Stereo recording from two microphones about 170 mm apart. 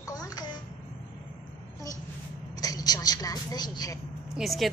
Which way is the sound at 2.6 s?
20° left (ahead or behind).